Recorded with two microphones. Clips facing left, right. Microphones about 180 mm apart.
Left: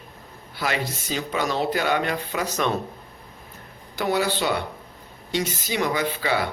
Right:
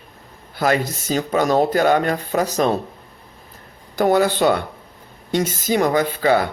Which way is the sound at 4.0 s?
50° right (ahead or behind).